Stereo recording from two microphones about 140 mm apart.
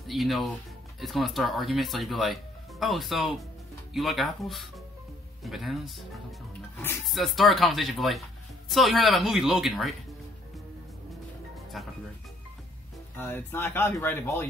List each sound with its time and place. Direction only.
0.0 s speech: centre (ahead or behind)
7.1 s speech: centre (ahead or behind)
11.7 s speech: centre (ahead or behind)
13.2 s speech: 15° left (ahead or behind)